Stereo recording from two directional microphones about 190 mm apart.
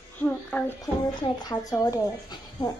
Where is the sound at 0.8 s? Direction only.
20° left (ahead or behind).